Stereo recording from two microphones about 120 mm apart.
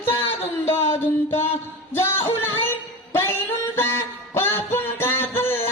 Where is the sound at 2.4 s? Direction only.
20° left (ahead or behind).